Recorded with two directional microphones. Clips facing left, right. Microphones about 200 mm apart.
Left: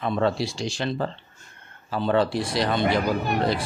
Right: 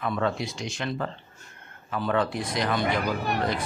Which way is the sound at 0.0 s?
30° left (ahead or behind).